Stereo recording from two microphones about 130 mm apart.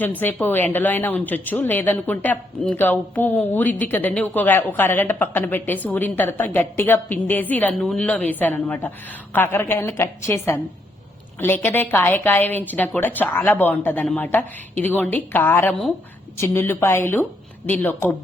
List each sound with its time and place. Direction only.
0.0 s a woman's voice: 15° left (ahead or behind)